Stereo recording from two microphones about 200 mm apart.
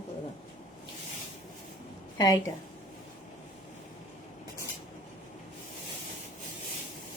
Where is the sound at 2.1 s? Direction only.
20° left (ahead or behind).